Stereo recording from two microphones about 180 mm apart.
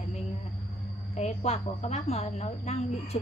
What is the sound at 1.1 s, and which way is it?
A woman's voice, 35° left (ahead or behind).